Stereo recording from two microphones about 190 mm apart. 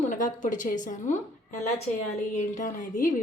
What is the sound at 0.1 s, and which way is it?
A woman's voice, 45° left (ahead or behind).